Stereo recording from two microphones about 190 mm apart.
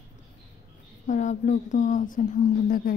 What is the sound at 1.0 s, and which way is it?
A woman's voice, 40° left (ahead or behind).